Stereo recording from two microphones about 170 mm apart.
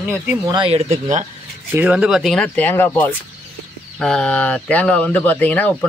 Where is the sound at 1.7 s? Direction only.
5° right (ahead or behind).